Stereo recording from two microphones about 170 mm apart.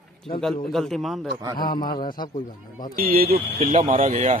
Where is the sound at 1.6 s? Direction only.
25° left (ahead or behind).